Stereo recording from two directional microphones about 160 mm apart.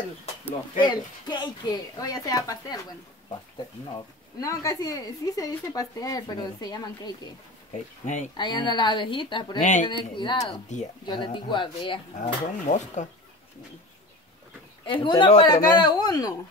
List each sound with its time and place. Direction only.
0.5 s speech: 30° left (ahead or behind)
3.9 s speech: 20° left (ahead or behind)
8.4 s speech: 30° left (ahead or behind)
9.6 s speech: 50° left (ahead or behind)
9.8 s speech: 30° left (ahead or behind)
10.7 s speech: 45° left (ahead or behind)
11.1 s speech: 30° left (ahead or behind)
12.6 s speech: 45° left (ahead or behind)
14.9 s speech: 30° left (ahead or behind)